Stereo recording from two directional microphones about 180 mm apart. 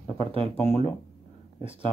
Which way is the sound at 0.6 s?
35° left (ahead or behind).